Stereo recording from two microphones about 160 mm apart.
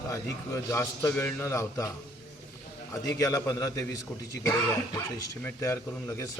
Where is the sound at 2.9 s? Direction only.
20° left (ahead or behind).